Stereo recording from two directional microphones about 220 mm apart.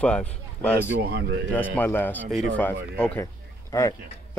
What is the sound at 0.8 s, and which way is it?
Speech, 50° right (ahead or behind).